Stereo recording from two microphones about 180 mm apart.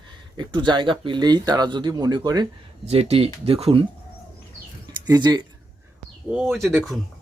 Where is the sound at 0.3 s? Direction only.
25° right (ahead or behind).